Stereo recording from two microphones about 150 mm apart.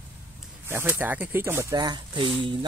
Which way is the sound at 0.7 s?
15° right (ahead or behind).